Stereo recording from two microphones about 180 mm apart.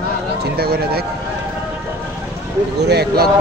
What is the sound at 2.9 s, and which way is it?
Speech, 65° right (ahead or behind).